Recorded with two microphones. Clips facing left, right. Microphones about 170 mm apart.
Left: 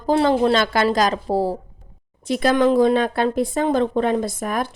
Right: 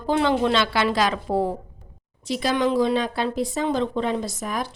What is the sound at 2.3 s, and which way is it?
A woman's voice, 55° left (ahead or behind).